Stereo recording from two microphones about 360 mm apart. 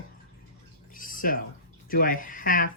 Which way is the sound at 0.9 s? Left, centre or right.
Left.